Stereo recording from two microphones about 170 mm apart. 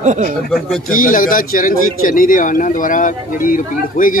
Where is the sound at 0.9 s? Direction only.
55° left (ahead or behind).